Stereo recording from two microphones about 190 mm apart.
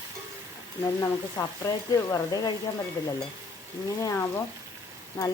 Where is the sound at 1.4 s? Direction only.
15° left (ahead or behind).